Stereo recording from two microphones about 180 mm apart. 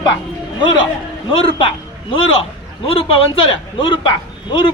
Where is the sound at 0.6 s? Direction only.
25° left (ahead or behind).